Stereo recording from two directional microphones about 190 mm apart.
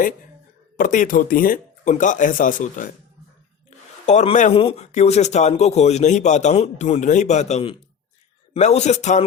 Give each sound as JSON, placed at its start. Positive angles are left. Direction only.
{"t": 0.8, "sound": "speech", "side_deg": 45}
{"t": 4.0, "sound": "speech", "side_deg": 35}